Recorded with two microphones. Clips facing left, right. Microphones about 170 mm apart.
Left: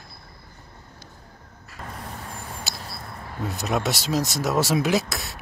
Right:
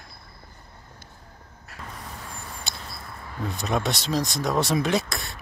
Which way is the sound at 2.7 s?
5° left (ahead or behind).